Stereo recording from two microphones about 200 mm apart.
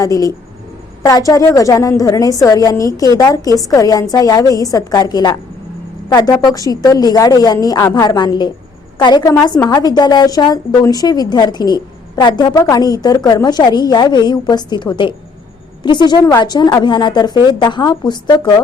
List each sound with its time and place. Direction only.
0.0 s a woman's voice: 15° left (ahead or behind)